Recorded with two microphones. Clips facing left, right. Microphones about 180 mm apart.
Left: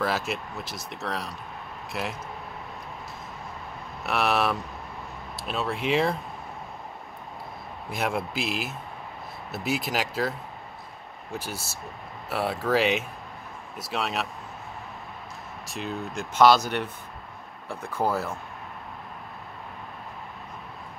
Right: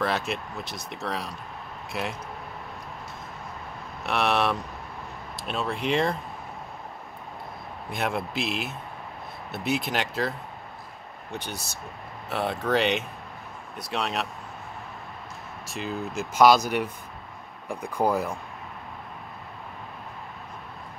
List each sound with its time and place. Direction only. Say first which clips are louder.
0.0 s speech: even; centre (ahead or behind)
4.0 s speech: even; centre (ahead or behind)
7.9 s speech: even; centre (ahead or behind)
11.3 s speech: left 1 dB; centre (ahead or behind)
15.6 s speech: right 1 dB; centre (ahead or behind)
17.9 s speech: right 2 dB; 15° right (ahead or behind)